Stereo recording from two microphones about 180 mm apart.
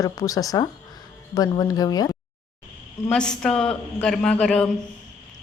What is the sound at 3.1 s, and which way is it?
Speech, 5° left (ahead or behind).